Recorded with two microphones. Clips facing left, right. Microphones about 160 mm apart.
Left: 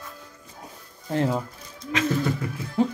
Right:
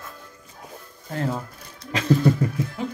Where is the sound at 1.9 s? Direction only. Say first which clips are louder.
Right 4 dB; 35° right (ahead or behind).